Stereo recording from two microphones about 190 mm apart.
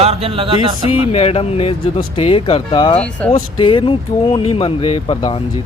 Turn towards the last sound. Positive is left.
turn(degrees=30)  # may be behind; listen again after turning